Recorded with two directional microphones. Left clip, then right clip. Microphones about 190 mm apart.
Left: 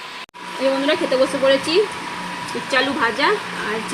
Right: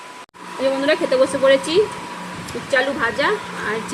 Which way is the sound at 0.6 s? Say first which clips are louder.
Even; 10° left (ahead or behind).